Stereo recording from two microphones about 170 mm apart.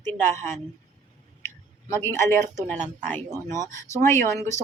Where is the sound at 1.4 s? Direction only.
15° left (ahead or behind).